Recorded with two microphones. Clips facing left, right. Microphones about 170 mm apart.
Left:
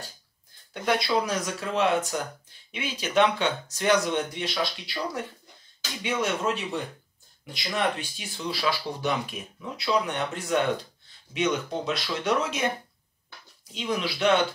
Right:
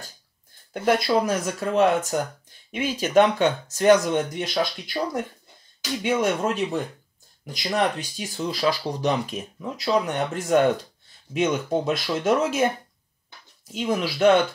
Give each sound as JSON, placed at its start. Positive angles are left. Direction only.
{"t": 0.8, "sound": "speech", "side_deg": -45}
{"t": 13.7, "sound": "speech", "side_deg": -45}